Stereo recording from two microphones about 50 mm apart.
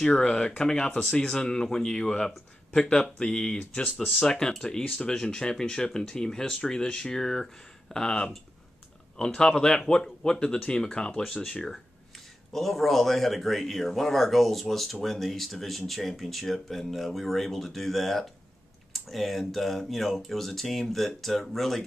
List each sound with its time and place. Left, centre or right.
0.1 s speech: centre